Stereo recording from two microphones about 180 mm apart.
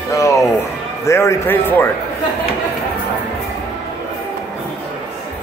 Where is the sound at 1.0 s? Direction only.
15° left (ahead or behind).